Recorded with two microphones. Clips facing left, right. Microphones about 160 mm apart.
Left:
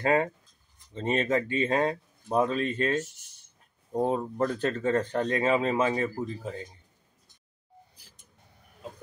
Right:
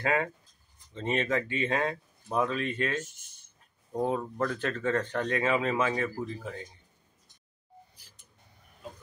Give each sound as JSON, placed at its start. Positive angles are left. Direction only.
{"t": 0.0, "sound": "speech", "side_deg": 35}